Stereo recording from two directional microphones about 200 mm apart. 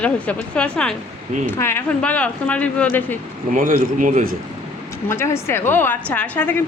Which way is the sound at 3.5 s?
45° right (ahead or behind).